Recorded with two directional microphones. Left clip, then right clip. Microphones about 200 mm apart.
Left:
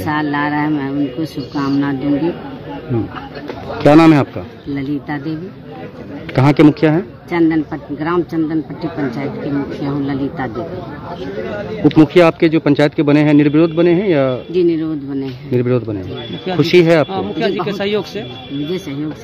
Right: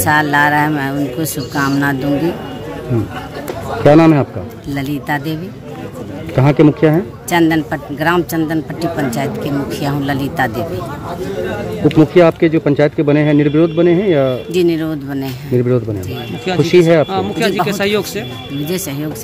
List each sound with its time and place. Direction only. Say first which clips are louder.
0.0 s speech: right 6 dB; 10° right (ahead or behind)
3.8 s speech: even; 15° left (ahead or behind)
4.7 s speech: right 3 dB; 10° right (ahead or behind)
6.3 s speech: even; 15° left (ahead or behind)
7.2 s speech: right 2 dB; 10° right (ahead or behind)
12.0 s speech: even; 10° left (ahead or behind)
14.5 s speech: even; 10° right (ahead or behind)
15.5 s speech: right 1 dB; 10° left (ahead or behind)